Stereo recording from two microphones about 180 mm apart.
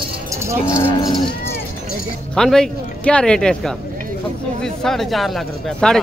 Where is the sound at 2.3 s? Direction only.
5° left (ahead or behind).